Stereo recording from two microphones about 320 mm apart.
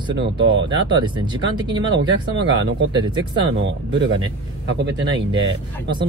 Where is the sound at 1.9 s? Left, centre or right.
Right.